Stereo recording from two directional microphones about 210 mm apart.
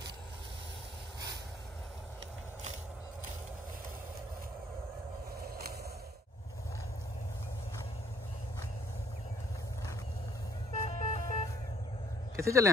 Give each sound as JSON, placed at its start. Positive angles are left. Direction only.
{"t": 10.7, "sound": "vehicle", "side_deg": 35}
{"t": 12.4, "sound": "speech", "side_deg": -15}